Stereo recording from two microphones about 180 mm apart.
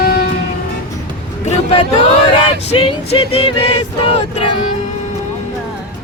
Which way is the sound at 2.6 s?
35° left (ahead or behind).